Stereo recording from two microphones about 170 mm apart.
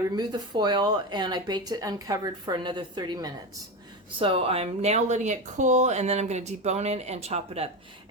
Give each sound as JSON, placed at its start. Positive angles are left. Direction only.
{"t": 0.2, "sound": "speech", "side_deg": -25}